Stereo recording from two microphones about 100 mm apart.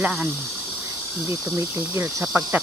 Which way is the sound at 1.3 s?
30° right (ahead or behind).